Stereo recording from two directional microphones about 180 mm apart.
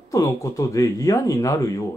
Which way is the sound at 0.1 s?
15° left (ahead or behind).